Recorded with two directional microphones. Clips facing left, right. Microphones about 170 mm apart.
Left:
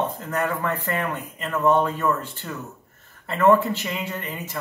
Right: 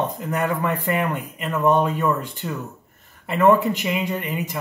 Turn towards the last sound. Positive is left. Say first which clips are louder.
# right 6 dB
turn(degrees=-15)  # may be behind; listen again after turning